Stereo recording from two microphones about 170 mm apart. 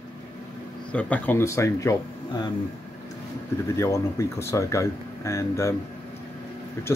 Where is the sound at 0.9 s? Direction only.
10° left (ahead or behind).